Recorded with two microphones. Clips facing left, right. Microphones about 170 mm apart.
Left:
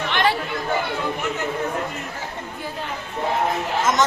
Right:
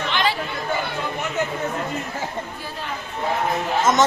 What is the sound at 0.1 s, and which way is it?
Chatter, 60° left (ahead or behind).